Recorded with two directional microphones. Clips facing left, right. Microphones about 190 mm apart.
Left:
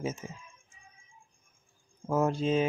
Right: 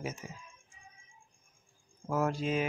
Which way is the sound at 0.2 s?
25° left (ahead or behind).